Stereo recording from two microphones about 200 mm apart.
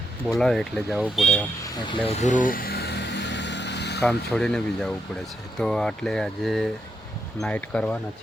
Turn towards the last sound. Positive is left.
turn(degrees=5)  # may be behind; listen again after turning